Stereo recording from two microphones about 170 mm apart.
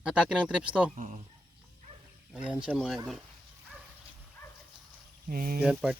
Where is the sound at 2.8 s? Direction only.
5° right (ahead or behind).